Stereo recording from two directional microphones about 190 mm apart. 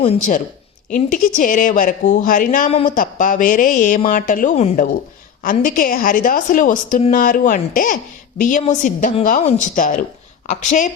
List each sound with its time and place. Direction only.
0.9 s a woman's voice: 45° left (ahead or behind)